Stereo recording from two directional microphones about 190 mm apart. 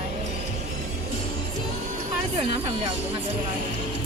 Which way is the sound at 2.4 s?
25° right (ahead or behind).